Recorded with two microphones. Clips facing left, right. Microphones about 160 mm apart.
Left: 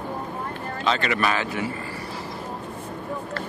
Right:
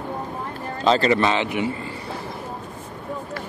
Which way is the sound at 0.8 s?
35° right (ahead or behind).